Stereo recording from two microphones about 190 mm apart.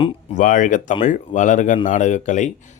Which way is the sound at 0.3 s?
45° left (ahead or behind).